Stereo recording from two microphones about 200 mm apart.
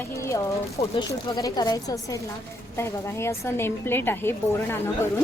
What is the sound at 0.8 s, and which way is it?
Speech, 20° left (ahead or behind).